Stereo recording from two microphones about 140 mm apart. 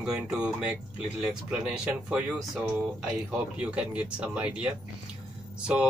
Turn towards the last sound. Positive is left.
turn(degrees=-5)  # may be behind; listen again after turning